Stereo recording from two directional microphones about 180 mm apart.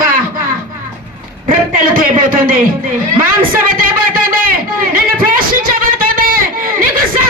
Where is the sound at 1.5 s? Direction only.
50° right (ahead or behind).